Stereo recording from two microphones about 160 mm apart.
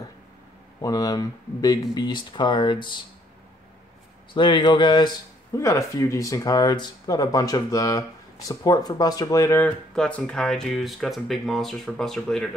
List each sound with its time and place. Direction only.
0.7 s speech: 20° left (ahead or behind)
4.3 s speech: 30° left (ahead or behind)
9.9 s speech: 5° left (ahead or behind)